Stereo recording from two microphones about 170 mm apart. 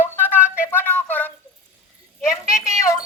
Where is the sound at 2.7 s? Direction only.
15° left (ahead or behind).